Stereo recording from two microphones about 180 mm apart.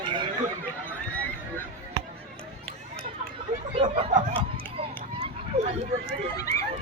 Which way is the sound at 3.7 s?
30° right (ahead or behind).